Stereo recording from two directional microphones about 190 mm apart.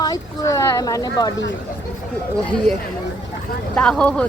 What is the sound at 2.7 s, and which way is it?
Speech, 5° left (ahead or behind).